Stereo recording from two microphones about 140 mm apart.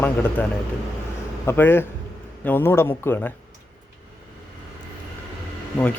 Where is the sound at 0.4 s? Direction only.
10° left (ahead or behind).